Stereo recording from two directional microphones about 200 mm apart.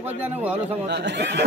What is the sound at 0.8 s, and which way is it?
Speech, 60° right (ahead or behind).